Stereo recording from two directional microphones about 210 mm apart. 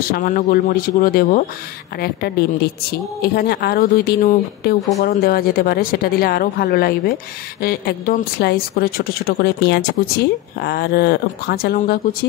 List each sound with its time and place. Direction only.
0.0 s speech: 45° left (ahead or behind)